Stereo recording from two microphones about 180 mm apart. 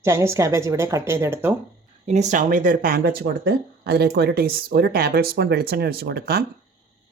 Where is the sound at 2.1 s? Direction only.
40° right (ahead or behind); by 6.4 s 60° right (ahead or behind).